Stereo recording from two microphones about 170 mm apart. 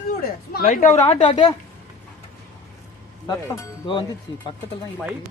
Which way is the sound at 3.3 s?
25° left (ahead or behind).